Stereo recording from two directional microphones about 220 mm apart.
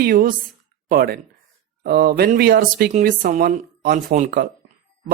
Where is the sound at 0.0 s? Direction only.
40° right (ahead or behind).